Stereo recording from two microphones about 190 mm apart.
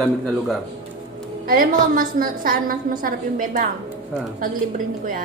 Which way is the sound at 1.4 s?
50° right (ahead or behind).